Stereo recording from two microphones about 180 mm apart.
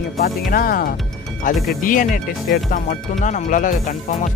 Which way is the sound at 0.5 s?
55° left (ahead or behind).